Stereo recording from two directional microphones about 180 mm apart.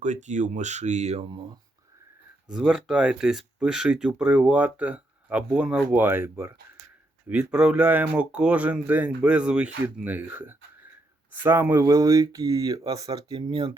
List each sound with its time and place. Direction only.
0.0 s speech: 40° right (ahead or behind)
2.5 s speech: 5° right (ahead or behind); by 13.7 s 25° right (ahead or behind)